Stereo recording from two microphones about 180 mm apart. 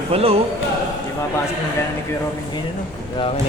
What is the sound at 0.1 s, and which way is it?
Speech, 35° right (ahead or behind).